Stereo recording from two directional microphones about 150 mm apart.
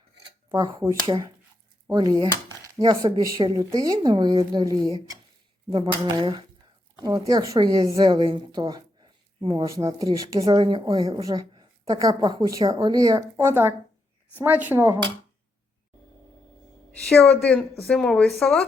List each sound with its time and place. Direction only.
0.5 s a woman's voice: 25° right (ahead or behind)
6.1 s a woman's voice: 30° right (ahead or behind)
9.6 s a woman's voice: 20° right (ahead or behind)
17.1 s a woman's voice: 5° left (ahead or behind)